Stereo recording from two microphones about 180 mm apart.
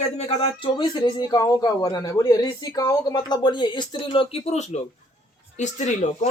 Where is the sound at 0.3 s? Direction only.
25° left (ahead or behind).